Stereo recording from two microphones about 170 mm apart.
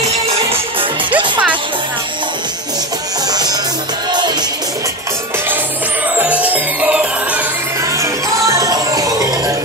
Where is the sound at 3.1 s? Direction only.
25° right (ahead or behind).